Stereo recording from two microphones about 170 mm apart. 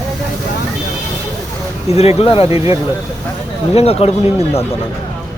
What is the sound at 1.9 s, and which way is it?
Speech, 35° left (ahead or behind).